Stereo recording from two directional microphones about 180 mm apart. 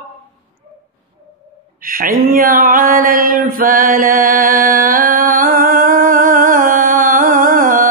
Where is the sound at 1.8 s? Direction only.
50° right (ahead or behind).